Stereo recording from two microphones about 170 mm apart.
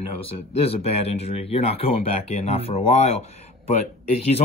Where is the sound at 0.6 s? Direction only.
35° left (ahead or behind).